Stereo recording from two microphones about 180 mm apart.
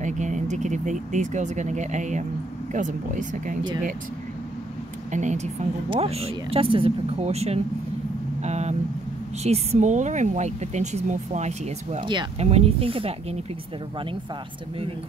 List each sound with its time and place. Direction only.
0.0 s speech: 40° right (ahead or behind)
5.1 s speech: 40° right (ahead or behind)
8.4 s vehicle: 40° right (ahead or behind)
9.4 s speech: 35° right (ahead or behind)
12.0 s speech: 25° right (ahead or behind)